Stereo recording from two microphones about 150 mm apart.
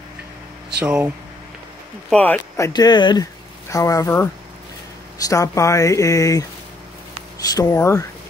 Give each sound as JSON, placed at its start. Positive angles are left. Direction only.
{"t": 0.7, "sound": "speech", "side_deg": -10}
{"t": 2.0, "sound": "speech", "side_deg": 5}
{"t": 2.5, "sound": "speech", "side_deg": 25}
{"t": 7.4, "sound": "speech", "side_deg": 25}